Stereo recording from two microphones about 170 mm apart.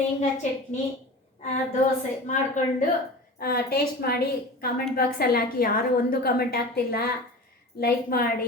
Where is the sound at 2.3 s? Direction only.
50° left (ahead or behind).